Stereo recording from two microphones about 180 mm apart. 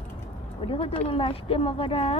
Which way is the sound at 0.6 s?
30° left (ahead or behind).